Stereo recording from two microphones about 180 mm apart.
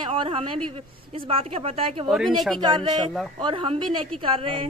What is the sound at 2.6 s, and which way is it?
Speech, 25° right (ahead or behind).